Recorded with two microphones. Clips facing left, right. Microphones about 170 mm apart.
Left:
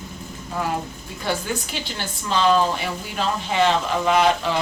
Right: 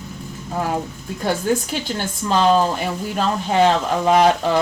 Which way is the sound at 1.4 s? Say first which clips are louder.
Right 8 dB; 45° right (ahead or behind).